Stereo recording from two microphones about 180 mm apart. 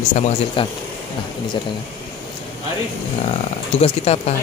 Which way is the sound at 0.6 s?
30° left (ahead or behind).